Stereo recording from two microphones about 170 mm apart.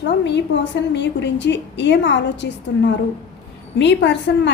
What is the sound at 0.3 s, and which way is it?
A woman's voice, 90° left.